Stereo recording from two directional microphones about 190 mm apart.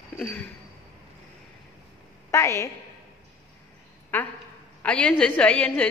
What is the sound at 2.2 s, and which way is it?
Speech, 15° left (ahead or behind).